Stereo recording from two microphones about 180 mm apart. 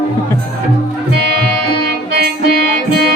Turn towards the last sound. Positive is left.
turn(degrees=-60)  # may be behind; listen again after turning